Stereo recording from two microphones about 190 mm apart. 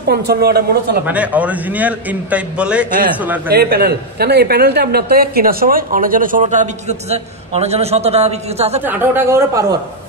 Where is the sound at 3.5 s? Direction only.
55° right (ahead or behind); by 8.8 s 35° right (ahead or behind).